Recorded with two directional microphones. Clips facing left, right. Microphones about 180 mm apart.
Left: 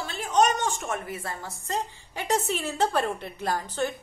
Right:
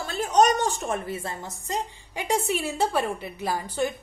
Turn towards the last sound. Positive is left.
turn(degrees=-10)  # may be behind; listen again after turning